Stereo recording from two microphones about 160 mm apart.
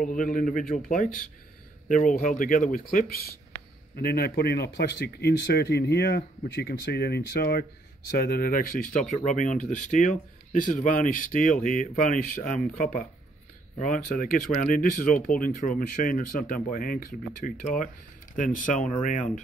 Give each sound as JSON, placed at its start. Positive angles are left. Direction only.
{"t": 0.0, "sound": "speech", "side_deg": 60}